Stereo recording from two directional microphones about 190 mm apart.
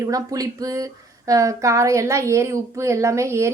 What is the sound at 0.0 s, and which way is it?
A woman's voice, 20° right (ahead or behind).